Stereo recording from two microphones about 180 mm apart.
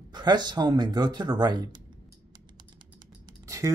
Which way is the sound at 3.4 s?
15° right (ahead or behind).